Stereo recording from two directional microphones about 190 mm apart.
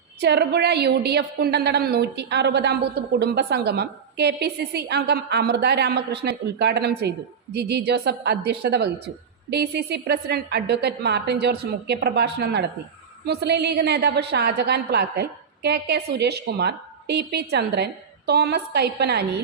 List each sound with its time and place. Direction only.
0.2 s a woman's voice: 60° right (ahead or behind)